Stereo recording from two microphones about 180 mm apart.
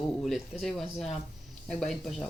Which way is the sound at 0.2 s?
Centre (ahead or behind).